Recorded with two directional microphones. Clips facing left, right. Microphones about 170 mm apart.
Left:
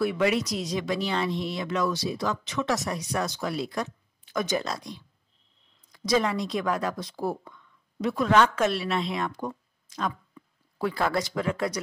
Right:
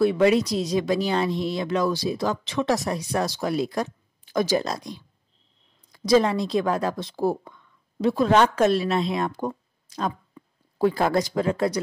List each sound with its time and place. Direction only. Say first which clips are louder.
0.0 s speech: right 6 dB; 30° right (ahead or behind)